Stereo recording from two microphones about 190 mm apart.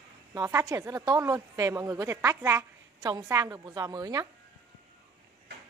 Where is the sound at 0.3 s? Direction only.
15° right (ahead or behind).